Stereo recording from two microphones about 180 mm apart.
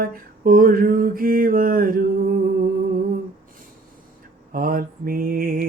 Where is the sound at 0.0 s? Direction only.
55° right (ahead or behind).